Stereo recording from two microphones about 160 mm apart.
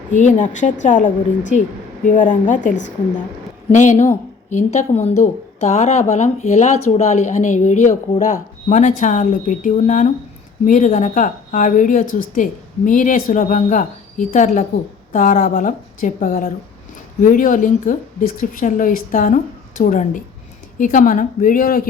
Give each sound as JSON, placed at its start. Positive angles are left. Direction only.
{"t": 0.2, "sound": "a woman's voice", "side_deg": 50}